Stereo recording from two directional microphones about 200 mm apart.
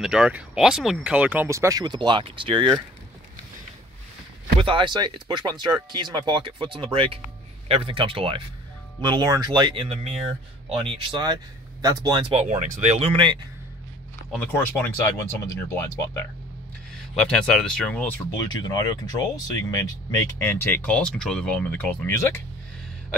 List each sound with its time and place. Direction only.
0.0 s speech: 5° right (ahead or behind); by 2.8 s 25° right (ahead or behind)
4.6 s speech: 25° right (ahead or behind)
12.3 s speech: 35° right (ahead or behind)
14.3 s speech: 5° left (ahead or behind)
16.0 s speech: 15° left (ahead or behind)
17.1 s speech: centre (ahead or behind)